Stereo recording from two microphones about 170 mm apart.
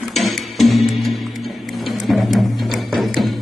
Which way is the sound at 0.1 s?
Centre (ahead or behind).